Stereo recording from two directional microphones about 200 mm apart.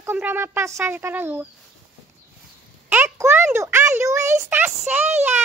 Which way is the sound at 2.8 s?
10° right (ahead or behind).